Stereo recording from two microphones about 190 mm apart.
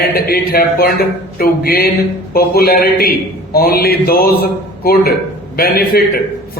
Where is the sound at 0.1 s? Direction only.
55° left (ahead or behind).